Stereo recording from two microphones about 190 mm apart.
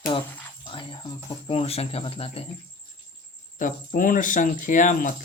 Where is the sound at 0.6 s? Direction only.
25° left (ahead or behind).